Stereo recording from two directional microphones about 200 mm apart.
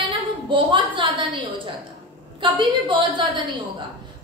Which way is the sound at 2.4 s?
25° right (ahead or behind).